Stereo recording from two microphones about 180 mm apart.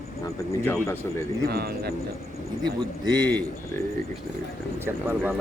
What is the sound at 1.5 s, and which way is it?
Speech, 60° right (ahead or behind).